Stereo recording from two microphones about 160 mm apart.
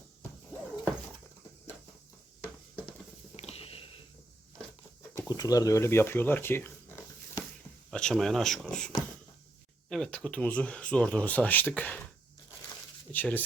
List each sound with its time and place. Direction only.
3.3 s a sound: 40° left (ahead or behind)
5.3 s speech: 25° left (ahead or behind)
7.9 s speech: 5° left (ahead or behind)
9.9 s speech: 5° left (ahead or behind)
13.1 s speech: 10° left (ahead or behind)